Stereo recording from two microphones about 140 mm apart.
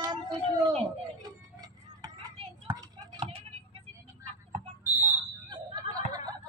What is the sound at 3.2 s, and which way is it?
Vehicle, 45° right (ahead or behind).